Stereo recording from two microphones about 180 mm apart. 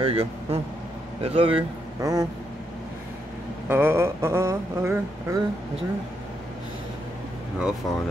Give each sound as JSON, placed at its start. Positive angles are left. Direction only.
{"t": 0.0, "sound": "speech", "side_deg": -35}
{"t": 2.0, "sound": "speech", "side_deg": -20}
{"t": 3.6, "sound": "a sound", "side_deg": -10}
{"t": 7.5, "sound": "speech", "side_deg": -5}